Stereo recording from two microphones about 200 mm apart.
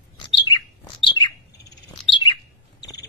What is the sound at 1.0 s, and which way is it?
Bird, 20° left (ahead or behind).